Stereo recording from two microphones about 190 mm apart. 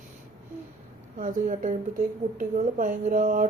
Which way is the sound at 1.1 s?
45° right (ahead or behind).